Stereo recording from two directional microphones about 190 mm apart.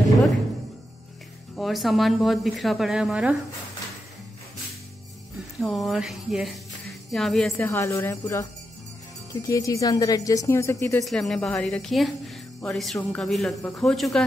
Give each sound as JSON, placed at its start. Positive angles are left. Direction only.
{"t": 1.6, "sound": "a woman's voice", "side_deg": 0}
{"t": 5.6, "sound": "a woman's voice", "side_deg": 0}
{"t": 11.1, "sound": "a woman's voice", "side_deg": 0}